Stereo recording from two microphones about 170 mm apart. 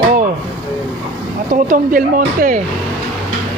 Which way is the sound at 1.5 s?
50° right (ahead or behind).